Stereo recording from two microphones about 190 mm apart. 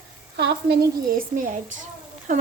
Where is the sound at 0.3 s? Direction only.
60° right (ahead or behind).